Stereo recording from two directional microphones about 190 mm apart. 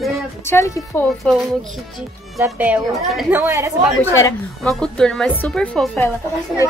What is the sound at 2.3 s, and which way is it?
A woman's voice, 10° right (ahead or behind).